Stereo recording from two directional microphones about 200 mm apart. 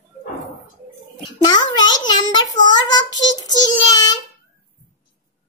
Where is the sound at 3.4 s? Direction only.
20° left (ahead or behind).